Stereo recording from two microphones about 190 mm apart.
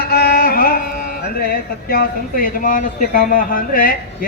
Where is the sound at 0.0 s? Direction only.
55° left (ahead or behind).